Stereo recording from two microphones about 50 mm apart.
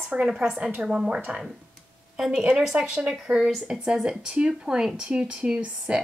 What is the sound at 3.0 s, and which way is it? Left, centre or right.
Speech, right.